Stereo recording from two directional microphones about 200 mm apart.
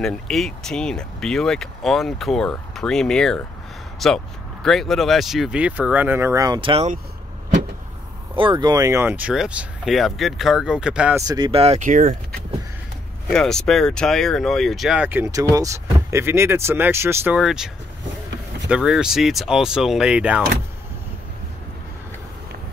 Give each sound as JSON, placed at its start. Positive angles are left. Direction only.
{"t": 0.0, "sound": "speech", "side_deg": 0}
{"t": 8.4, "sound": "speech", "side_deg": -25}
{"t": 11.2, "sound": "speech", "side_deg": -25}
{"t": 13.3, "sound": "speech", "side_deg": 5}
{"t": 18.7, "sound": "speech", "side_deg": -5}